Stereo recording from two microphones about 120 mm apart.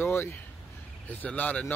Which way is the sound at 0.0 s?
20° left (ahead or behind).